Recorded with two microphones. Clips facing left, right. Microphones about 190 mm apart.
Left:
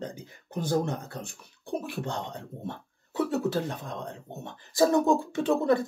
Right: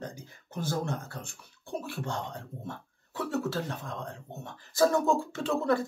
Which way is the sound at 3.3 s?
20° left (ahead or behind).